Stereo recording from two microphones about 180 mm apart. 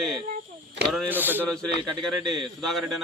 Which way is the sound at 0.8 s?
10° right (ahead or behind).